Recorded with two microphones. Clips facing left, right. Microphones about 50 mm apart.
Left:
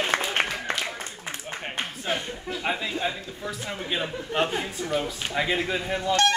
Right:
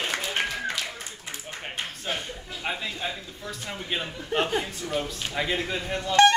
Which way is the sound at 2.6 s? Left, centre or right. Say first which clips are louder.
Left 3 dB; centre.